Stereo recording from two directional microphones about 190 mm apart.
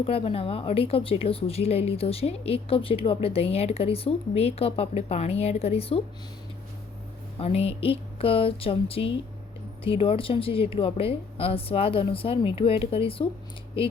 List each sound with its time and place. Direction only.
0.0 s a woman's voice: 30° left (ahead or behind)
7.3 s speech: 30° left (ahead or behind)